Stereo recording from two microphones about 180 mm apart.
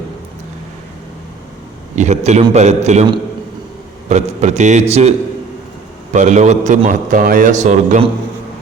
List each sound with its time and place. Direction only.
2.0 s a man's voice: 40° right (ahead or behind)
4.1 s a man's voice: 40° right (ahead or behind)
6.1 s a man's voice: 40° right (ahead or behind)